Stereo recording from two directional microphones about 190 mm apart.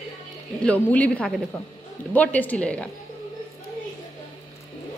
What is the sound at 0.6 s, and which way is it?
A woman's voice, 5° left (ahead or behind).